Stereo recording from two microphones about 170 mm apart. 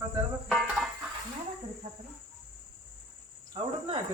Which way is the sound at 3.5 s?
30° right (ahead or behind).